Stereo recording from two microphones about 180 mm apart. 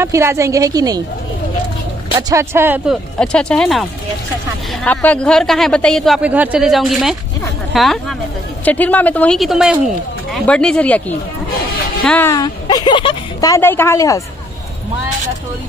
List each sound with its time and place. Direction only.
0.0 s a woman's voice: 15° right (ahead or behind)
2.1 s a woman's voice: 20° right (ahead or behind)
3.2 s speech: 5° left (ahead or behind)
4.8 s speech: 10° left (ahead or behind)
12.3 s a woman's voice: 20° left (ahead or behind)